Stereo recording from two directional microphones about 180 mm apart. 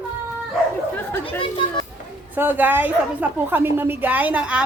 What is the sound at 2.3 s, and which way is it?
A woman's voice, 10° right (ahead or behind).